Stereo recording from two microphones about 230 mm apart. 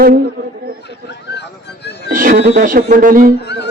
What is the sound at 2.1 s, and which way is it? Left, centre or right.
Speech, right.